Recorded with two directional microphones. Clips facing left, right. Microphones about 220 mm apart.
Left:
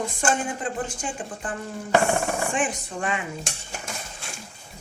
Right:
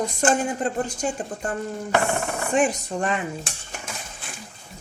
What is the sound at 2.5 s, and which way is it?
Speech, 40° right (ahead or behind).